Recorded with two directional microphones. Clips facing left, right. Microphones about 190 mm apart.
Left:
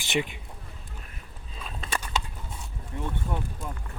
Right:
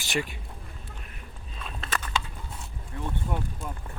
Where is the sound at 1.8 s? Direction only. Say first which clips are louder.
Even; 10° left (ahead or behind).